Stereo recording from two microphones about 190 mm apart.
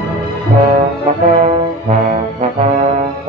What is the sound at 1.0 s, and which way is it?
Brass instrument, 40° right (ahead or behind).